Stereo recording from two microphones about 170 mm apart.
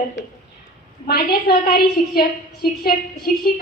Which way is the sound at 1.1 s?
65° left (ahead or behind).